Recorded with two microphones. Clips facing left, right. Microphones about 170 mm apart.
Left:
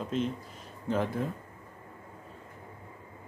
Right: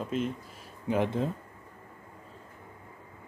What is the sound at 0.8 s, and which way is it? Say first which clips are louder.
Speech: right 2 dB; 15° right (ahead or behind).